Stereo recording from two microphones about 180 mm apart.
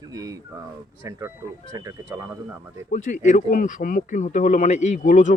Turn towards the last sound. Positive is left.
turn(degrees=45)  # may be behind; listen again after turning